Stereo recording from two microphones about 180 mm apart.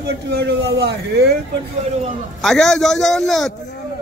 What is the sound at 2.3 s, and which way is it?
Speech, centre (ahead or behind).